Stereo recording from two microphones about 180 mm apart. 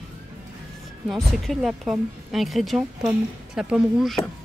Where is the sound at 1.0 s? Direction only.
Centre (ahead or behind).